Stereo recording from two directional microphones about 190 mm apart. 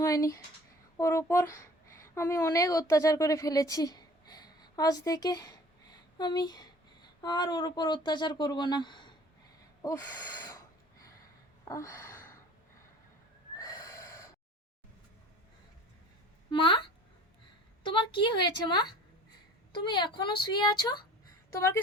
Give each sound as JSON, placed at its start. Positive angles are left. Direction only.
{"t": 0.0, "sound": "speech", "side_deg": 15}
{"t": 9.8, "sound": "gasp", "side_deg": 15}
{"t": 11.7, "sound": "a sound", "side_deg": 15}
{"t": 13.6, "sound": "snort", "side_deg": 15}
{"t": 16.5, "sound": "a woman's voice", "side_deg": 25}